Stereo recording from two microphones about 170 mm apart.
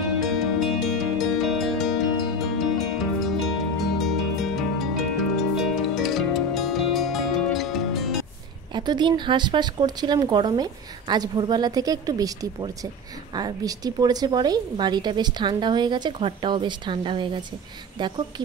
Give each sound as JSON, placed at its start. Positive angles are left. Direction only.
{"t": 0.2, "sound": "music", "side_deg": 0}
{"t": 8.7, "sound": "a woman's voice", "side_deg": -25}